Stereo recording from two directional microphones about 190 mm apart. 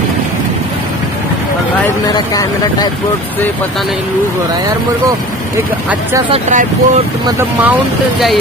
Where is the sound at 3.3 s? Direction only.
5° left (ahead or behind).